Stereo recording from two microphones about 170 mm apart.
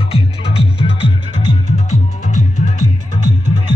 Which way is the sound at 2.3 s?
45° left (ahead or behind).